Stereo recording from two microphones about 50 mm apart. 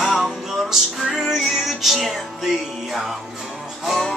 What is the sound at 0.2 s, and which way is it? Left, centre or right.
Music, centre.